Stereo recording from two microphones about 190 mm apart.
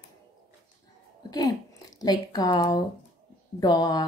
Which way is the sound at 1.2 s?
20° left (ahead or behind).